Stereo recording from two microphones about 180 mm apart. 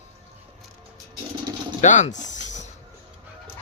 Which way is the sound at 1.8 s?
40° left (ahead or behind).